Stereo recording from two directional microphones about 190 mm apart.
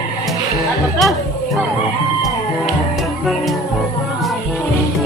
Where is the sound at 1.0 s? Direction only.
Centre (ahead or behind).